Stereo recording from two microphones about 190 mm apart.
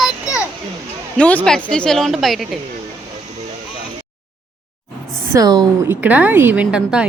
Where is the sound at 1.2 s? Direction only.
5° left (ahead or behind).